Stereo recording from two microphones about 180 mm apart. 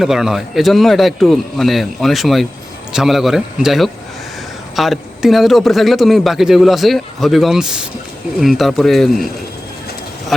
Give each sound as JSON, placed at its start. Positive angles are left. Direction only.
{"t": 0.0, "sound": "speech", "side_deg": 0}